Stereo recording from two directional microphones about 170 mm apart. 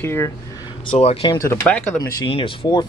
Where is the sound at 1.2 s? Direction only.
20° left (ahead or behind).